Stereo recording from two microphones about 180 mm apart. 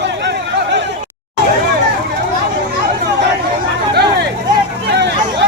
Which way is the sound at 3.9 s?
65° right (ahead or behind).